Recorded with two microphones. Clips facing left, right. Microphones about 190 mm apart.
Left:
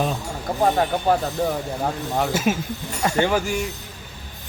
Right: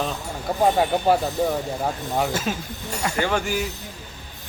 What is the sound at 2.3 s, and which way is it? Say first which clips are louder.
Speech: left 4 dB; 15° left (ahead or behind).